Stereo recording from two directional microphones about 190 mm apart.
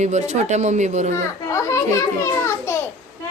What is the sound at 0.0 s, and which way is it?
Speech, 40° right (ahead or behind).